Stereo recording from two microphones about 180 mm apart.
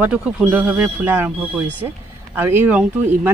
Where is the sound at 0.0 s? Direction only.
10° right (ahead or behind).